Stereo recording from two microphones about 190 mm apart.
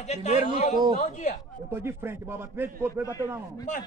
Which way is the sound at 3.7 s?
40° left (ahead or behind).